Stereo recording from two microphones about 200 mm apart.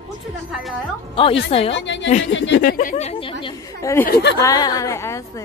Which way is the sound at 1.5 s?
30° left (ahead or behind).